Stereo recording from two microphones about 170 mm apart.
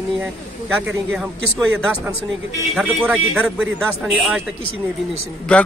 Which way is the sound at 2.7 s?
5° right (ahead or behind).